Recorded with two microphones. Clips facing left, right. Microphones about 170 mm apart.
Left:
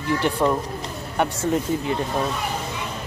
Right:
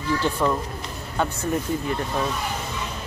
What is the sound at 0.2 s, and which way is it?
Speech, 20° left (ahead or behind).